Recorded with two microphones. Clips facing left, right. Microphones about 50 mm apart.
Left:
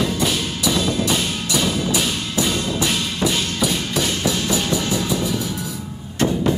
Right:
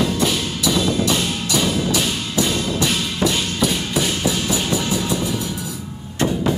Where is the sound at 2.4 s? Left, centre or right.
Centre.